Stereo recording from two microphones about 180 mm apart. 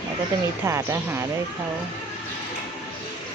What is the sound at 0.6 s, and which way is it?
Speech, 15° right (ahead or behind).